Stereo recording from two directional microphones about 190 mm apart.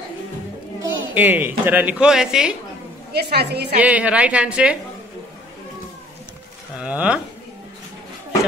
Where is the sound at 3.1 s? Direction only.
60° right (ahead or behind).